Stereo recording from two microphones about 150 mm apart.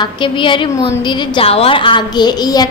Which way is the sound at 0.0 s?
35° left (ahead or behind).